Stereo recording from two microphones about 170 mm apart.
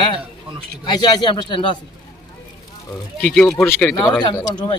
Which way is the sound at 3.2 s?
5° left (ahead or behind).